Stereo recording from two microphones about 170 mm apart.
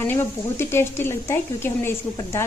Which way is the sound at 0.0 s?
10° left (ahead or behind).